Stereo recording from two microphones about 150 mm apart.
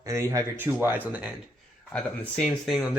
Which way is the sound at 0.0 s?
20° right (ahead or behind).